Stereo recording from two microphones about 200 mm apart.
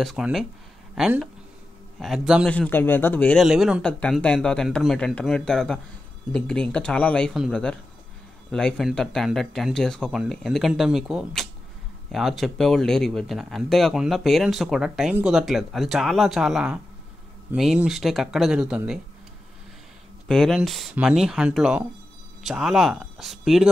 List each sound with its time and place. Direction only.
0.0 s speech: centre (ahead or behind)
2.5 s speech: 10° left (ahead or behind)
20.2 s speech: centre (ahead or behind)